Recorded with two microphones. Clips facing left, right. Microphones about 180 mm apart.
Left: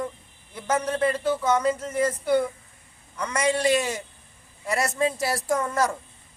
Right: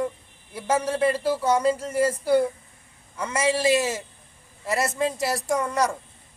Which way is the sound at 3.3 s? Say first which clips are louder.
Right 1 dB; 5° right (ahead or behind).